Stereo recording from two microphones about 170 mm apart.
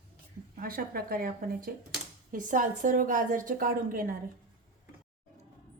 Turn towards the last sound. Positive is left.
turn(degrees=-55)  # may be behind; listen again after turning